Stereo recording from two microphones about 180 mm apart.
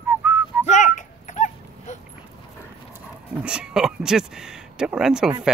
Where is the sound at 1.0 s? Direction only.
40° left (ahead or behind).